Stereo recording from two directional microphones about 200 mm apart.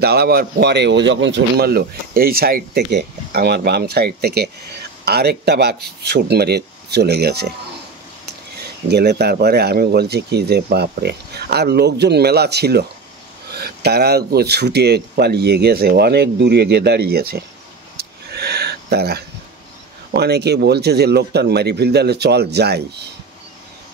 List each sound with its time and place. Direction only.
0.0 s speech: 50° right (ahead or behind)
8.5 s speech: 55° right (ahead or behind)
17.9 s a sound: 50° right (ahead or behind)
20.1 s speech: 55° right (ahead or behind)